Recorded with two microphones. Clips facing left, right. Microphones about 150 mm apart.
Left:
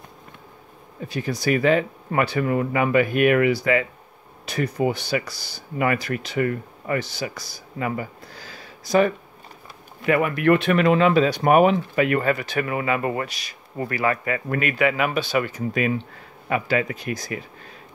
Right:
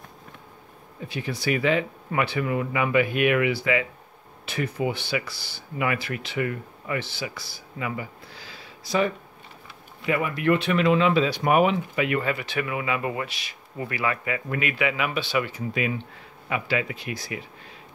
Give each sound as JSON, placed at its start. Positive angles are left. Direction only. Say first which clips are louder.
{"t": 1.0, "sound": "speech", "louder": "left 4 dB", "side_deg": 40}
{"t": 10.0, "sound": "speech", "louder": "left 5 dB", "side_deg": 60}